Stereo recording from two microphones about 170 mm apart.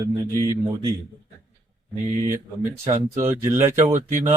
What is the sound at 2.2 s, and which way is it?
Speech, 15° right (ahead or behind).